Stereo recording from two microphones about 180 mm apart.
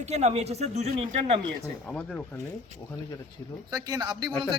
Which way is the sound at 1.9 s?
5° left (ahead or behind).